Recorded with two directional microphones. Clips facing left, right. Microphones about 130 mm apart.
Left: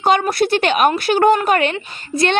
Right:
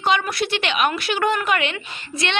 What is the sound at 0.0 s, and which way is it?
Speech, 45° left (ahead or behind).